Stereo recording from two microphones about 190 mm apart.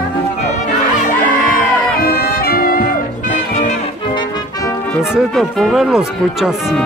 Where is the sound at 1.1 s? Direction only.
50° left (ahead or behind).